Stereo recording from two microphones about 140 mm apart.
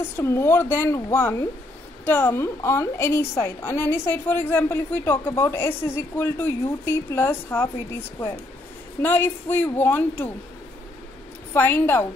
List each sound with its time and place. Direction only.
0.0 s a woman's voice: 20° left (ahead or behind)
9.0 s a woman's voice: 15° left (ahead or behind)
11.5 s a woman's voice: 15° left (ahead or behind)